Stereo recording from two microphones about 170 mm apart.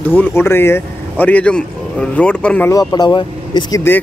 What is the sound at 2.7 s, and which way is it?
Speech, 20° left (ahead or behind).